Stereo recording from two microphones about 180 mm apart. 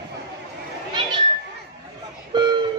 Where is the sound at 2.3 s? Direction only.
25° right (ahead or behind).